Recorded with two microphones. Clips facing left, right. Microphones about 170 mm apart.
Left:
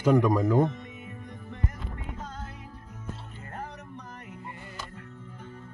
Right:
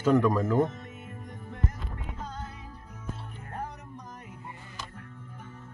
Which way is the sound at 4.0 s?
60° left (ahead or behind).